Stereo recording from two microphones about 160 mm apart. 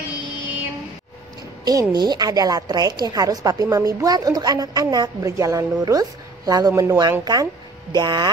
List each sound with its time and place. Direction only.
1.6 s a woman's voice: 25° right (ahead or behind)